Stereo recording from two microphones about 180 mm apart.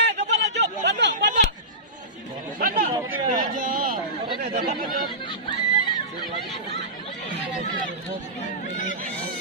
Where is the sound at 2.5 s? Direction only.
50° right (ahead or behind).